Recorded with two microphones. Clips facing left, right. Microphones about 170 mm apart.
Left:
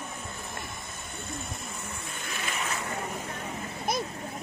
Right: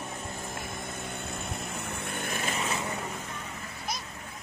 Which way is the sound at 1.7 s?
60° right (ahead or behind).